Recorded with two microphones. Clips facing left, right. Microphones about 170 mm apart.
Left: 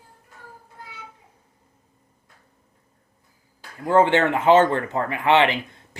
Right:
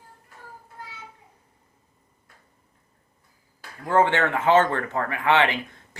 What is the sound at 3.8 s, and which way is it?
Speech, 20° left (ahead or behind).